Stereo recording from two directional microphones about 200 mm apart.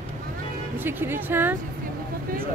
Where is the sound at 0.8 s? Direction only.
10° right (ahead or behind).